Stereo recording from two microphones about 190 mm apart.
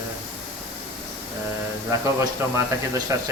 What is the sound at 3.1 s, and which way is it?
Speech, 15° right (ahead or behind).